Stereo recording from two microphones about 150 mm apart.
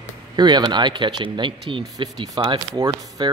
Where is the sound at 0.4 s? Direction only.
30° right (ahead or behind).